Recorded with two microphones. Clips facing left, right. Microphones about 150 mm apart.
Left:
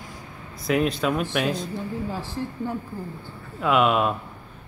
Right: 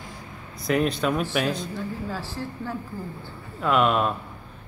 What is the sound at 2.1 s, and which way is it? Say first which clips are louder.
Speech: left 2 dB; 20° left (ahead or behind).